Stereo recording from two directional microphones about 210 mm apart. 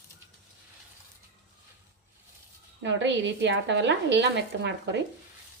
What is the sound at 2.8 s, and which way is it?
Speech, 60° right (ahead or behind).